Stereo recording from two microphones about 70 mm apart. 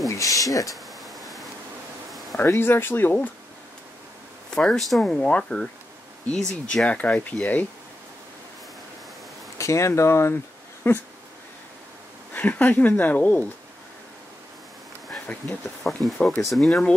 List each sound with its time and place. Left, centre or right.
0.1 s speech: left
1.0 s pink noise: centre
2.0 s a sound: centre
2.3 s speech: left
4.6 s speech: centre; by 7.6 s left
9.6 s speech: left
12.4 s speech: left
15.8 s speech: centre
16.2 s speech: centre
16.4 s speech: centre